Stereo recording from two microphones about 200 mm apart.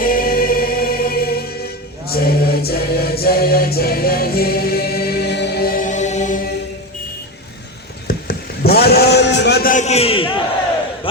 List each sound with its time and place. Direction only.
0.0 s music: 45° left (ahead or behind)
2.1 s choir: 50° left (ahead or behind)
8.0 s a sound: 50° left (ahead or behind); by 10.4 s 25° left (ahead or behind)